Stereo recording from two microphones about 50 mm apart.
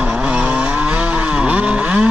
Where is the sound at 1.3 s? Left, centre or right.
Right.